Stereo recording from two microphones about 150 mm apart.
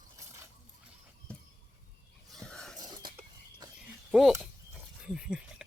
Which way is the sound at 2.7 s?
25° right (ahead or behind).